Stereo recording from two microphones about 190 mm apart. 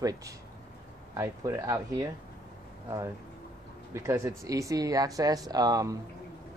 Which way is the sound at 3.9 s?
15° right (ahead or behind).